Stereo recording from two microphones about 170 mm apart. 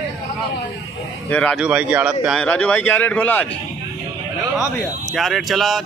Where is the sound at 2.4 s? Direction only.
10° left (ahead or behind).